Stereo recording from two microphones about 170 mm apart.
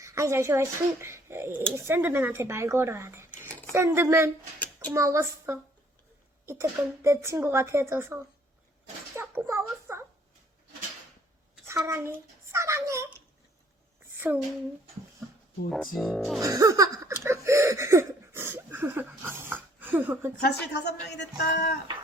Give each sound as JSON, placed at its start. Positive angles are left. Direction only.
{"t": 0.0, "sound": "speech", "side_deg": -15}
{"t": 11.9, "sound": "a child's voice", "side_deg": -15}
{"t": 15.7, "sound": "speech", "side_deg": 0}
{"t": 16.4, "sound": "laughter", "side_deg": -20}
{"t": 17.2, "sound": "a sound", "side_deg": -15}
{"t": 20.4, "sound": "a woman's voice", "side_deg": 80}